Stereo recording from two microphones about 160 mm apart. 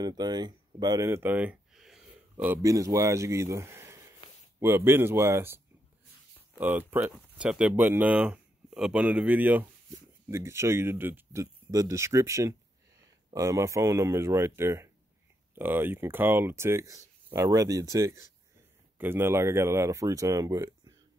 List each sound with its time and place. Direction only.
0.0 s speech: 25° right (ahead or behind)
6.6 s speech: 10° right (ahead or behind)